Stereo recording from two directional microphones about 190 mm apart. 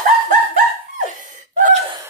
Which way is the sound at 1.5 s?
40° right (ahead or behind).